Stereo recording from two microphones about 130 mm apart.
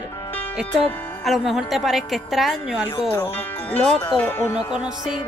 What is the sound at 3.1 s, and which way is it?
Speech, 15° left (ahead or behind).